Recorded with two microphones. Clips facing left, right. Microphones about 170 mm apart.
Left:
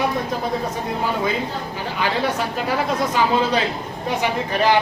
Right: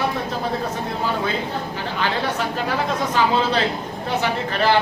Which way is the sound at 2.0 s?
10° left (ahead or behind).